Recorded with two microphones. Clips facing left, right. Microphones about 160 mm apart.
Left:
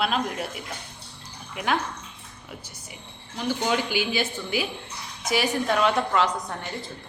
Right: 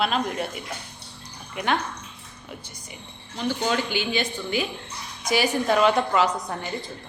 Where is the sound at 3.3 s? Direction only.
15° left (ahead or behind); by 6.7 s 5° right (ahead or behind).